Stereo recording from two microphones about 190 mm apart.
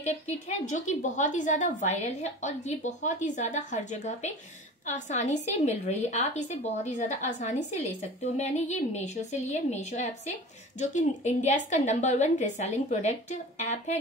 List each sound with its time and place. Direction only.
0.0 s a woman's voice: 40° left (ahead or behind)